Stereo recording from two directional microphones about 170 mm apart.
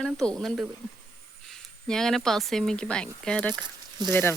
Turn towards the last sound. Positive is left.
turn(degrees=15)  # may be behind; listen again after turning